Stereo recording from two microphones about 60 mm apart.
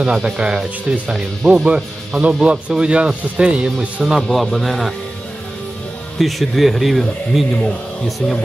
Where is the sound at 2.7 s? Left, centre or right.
Centre.